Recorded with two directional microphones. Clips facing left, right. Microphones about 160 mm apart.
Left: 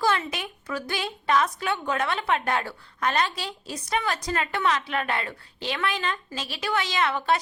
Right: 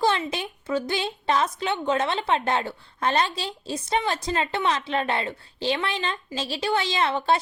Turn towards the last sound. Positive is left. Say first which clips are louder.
# right 2 dB
turn(degrees=-30)  # may be behind; listen again after turning